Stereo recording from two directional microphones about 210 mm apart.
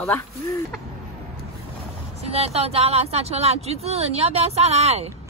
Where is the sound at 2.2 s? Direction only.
30° right (ahead or behind).